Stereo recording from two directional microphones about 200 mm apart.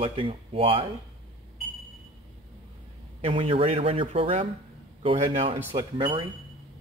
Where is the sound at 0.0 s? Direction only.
25° right (ahead or behind).